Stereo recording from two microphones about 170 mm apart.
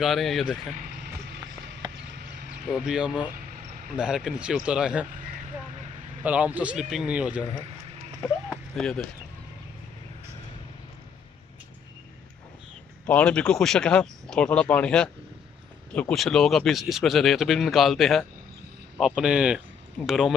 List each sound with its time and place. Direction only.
0.0 s speech: centre (ahead or behind)
2.7 s speech: 5° right (ahead or behind)
6.2 s a man's voice: 10° right (ahead or behind)
8.7 s speech: centre (ahead or behind)
13.0 s speech: 5° left (ahead or behind)